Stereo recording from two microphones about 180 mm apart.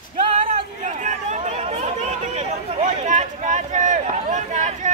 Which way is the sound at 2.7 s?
40° right (ahead or behind).